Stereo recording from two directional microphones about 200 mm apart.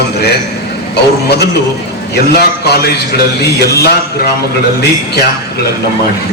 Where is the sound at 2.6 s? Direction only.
55° left (ahead or behind).